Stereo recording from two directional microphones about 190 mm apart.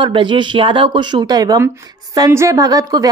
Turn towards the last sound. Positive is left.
turn(degrees=-20)  # may be behind; listen again after turning